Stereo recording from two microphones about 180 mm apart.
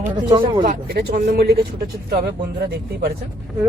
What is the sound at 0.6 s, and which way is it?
Speech, 45° right (ahead or behind).